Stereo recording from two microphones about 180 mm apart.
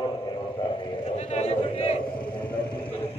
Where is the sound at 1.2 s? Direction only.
35° left (ahead or behind).